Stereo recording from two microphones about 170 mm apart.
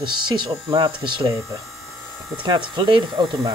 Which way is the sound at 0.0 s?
25° right (ahead or behind).